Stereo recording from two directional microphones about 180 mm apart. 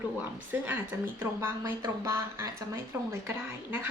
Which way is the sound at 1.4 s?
15° right (ahead or behind).